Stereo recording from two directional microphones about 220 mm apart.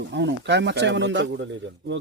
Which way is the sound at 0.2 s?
55° right (ahead or behind).